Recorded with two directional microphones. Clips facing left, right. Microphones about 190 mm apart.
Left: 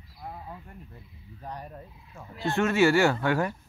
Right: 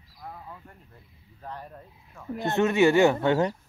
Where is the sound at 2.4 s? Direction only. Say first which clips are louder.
Right 2 dB; 20° right (ahead or behind).